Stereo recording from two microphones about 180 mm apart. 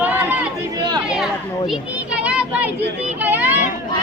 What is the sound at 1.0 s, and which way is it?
Children playing, centre (ahead or behind).